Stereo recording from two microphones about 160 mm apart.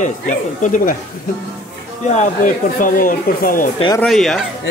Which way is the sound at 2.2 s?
55° left (ahead or behind).